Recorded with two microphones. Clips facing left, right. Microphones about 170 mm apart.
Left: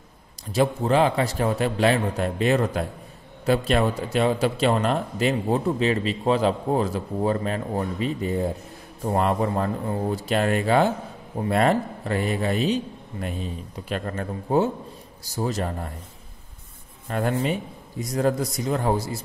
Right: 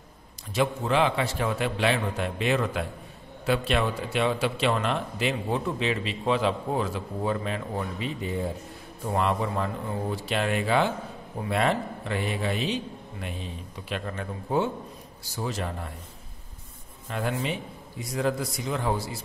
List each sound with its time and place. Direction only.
0.5 s a man's voice: 40° left (ahead or behind)
17.1 s a man's voice: 45° left (ahead or behind)